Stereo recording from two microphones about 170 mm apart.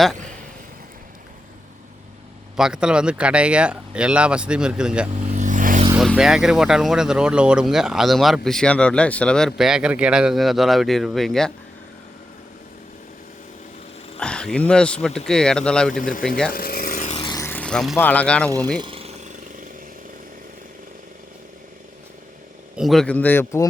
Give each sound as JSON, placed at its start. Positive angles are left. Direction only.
{"t": 2.6, "sound": "speech", "side_deg": -5}
{"t": 5.1, "sound": "vehicle", "side_deg": -45}
{"t": 6.0, "sound": "speech", "side_deg": -5}
{"t": 14.2, "sound": "speech", "side_deg": 5}
{"t": 16.5, "sound": "rub", "side_deg": 65}
{"t": 17.2, "sound": "a sound", "side_deg": 25}
{"t": 17.4, "sound": "a sound", "side_deg": 10}
{"t": 18.0, "sound": "speech", "side_deg": 10}
{"t": 18.8, "sound": "a sound", "side_deg": -30}
{"t": 22.7, "sound": "speech", "side_deg": 0}